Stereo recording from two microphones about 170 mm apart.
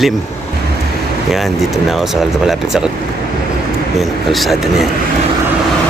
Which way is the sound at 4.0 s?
Centre (ahead or behind).